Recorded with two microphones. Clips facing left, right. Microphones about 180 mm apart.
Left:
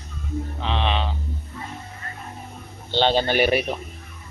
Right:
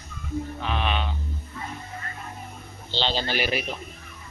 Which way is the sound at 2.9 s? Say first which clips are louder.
Left 7 dB; 55° left (ahead or behind).